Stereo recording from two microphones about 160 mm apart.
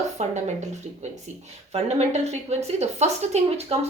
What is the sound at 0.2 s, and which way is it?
A woman's voice, 45° right (ahead or behind).